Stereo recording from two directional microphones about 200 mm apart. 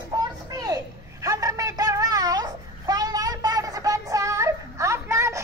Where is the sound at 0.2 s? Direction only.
20° right (ahead or behind).